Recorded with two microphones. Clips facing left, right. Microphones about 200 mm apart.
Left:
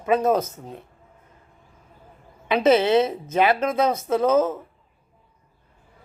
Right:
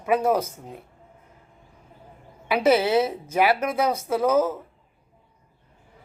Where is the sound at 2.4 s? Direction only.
10° right (ahead or behind).